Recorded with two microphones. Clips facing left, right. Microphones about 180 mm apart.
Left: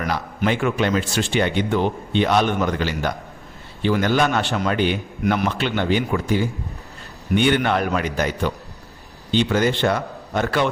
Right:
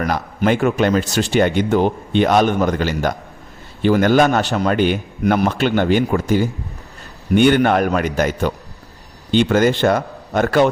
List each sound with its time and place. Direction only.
0.0 s a man's voice: 45° right (ahead or behind)